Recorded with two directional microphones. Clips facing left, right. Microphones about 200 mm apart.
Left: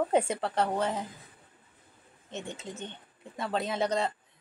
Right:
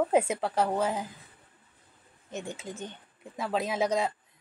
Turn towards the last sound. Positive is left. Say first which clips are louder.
# right 1 dB
turn(degrees=-10)  # may be behind; listen again after turning